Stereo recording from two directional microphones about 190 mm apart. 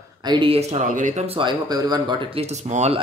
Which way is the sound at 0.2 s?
25° right (ahead or behind).